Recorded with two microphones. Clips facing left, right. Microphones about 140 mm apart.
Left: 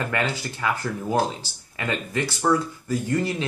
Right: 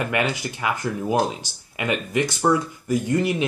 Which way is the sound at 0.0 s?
15° right (ahead or behind).